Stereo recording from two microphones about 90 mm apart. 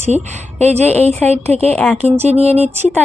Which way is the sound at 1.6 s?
15° left (ahead or behind).